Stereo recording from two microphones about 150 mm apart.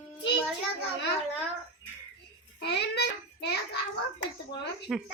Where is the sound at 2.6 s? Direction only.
90° left.